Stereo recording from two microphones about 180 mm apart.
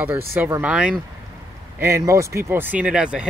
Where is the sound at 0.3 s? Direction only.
10° right (ahead or behind).